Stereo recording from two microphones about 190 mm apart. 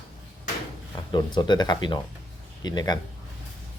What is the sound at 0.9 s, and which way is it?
Speech, 20° left (ahead or behind).